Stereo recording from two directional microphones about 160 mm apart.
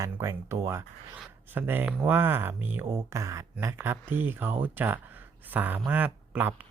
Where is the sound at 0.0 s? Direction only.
20° right (ahead or behind).